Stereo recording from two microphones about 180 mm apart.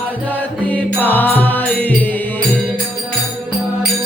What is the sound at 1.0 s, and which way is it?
Music, 10° left (ahead or behind).